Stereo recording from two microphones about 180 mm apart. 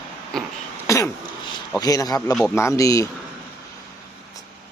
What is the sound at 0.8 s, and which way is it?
Throat clearing, 15° left (ahead or behind).